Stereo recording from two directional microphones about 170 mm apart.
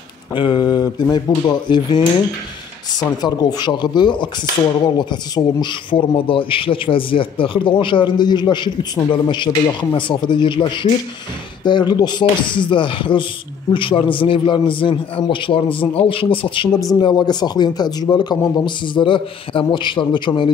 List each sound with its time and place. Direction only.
0.3 s a man's voice: 30° left (ahead or behind)